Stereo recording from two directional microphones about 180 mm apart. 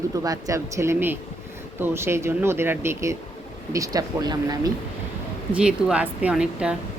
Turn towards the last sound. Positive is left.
turn(degrees=-5)  # may be behind; listen again after turning